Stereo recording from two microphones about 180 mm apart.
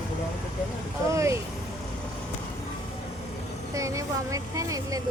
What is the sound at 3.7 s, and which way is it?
Speech, 15° right (ahead or behind).